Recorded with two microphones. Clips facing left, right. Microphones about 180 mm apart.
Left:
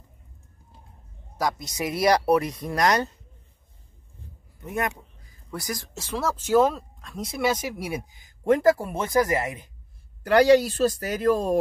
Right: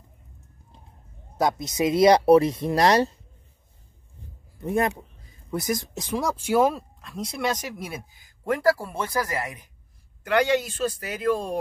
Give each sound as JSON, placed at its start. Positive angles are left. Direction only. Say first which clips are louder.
{"t": 1.6, "sound": "speech", "louder": "right 9 dB", "side_deg": -20}
{"t": 4.6, "sound": "speech", "louder": "right 5 dB", "side_deg": -30}
{"t": 10.2, "sound": "speech", "louder": "left 5 dB", "side_deg": 35}